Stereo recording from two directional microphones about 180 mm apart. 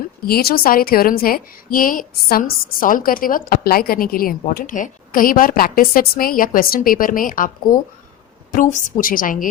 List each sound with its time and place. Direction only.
0.3 s a woman's voice: 55° left (ahead or behind)